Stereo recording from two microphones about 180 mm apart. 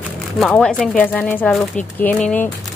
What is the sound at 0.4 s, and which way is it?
Speech, 5° left (ahead or behind).